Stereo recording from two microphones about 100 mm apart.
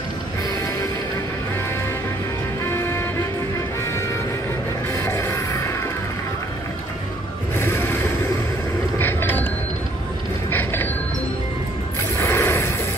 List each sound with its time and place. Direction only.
2.7 s music: 25° left (ahead or behind)
4.9 s music: 25° left (ahead or behind)
7.5 s mechanisms: 25° left (ahead or behind)
9.0 s a sound: 20° left (ahead or behind)
10.5 s mechanisms: 20° left (ahead or behind)
12.2 s a sound: 20° left (ahead or behind)